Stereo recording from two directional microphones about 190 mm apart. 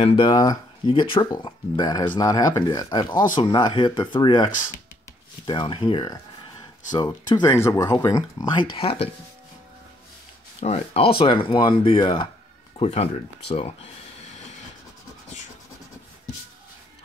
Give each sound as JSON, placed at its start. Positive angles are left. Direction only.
{"t": 0.0, "sound": "speech", "side_deg": 25}
{"t": 10.6, "sound": "speech", "side_deg": 35}